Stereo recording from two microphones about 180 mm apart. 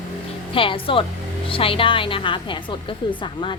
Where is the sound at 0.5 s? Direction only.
30° left (ahead or behind).